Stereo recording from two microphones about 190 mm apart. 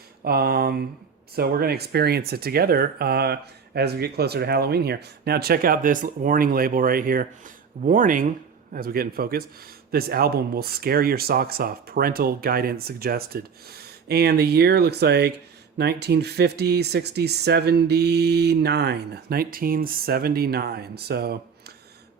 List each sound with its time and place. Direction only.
0.3 s speech: 55° right (ahead or behind)